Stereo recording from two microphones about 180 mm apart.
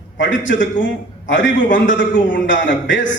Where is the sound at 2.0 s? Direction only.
90° left.